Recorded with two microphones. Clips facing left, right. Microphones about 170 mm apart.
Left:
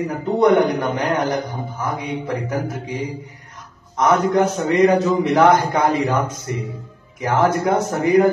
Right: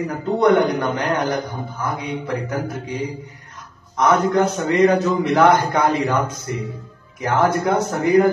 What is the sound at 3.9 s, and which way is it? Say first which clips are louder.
A man's voice: even; 15° left (ahead or behind).